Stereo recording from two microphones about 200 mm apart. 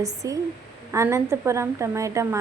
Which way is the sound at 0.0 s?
15° right (ahead or behind).